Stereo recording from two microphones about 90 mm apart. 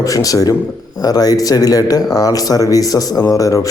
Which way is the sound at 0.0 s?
40° left (ahead or behind).